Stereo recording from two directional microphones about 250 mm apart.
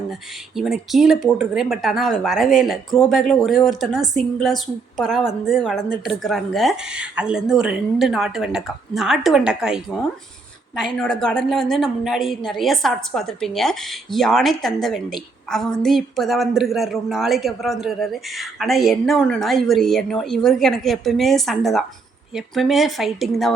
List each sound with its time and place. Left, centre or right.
0.1 s a woman's voice: centre